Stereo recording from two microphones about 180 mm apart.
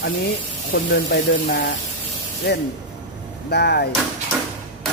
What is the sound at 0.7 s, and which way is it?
Speech, 70° left (ahead or behind).